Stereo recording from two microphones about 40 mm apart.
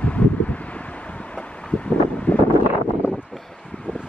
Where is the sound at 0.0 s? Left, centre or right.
Left.